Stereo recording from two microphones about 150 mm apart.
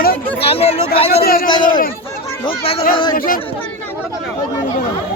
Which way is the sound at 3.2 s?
70° left (ahead or behind).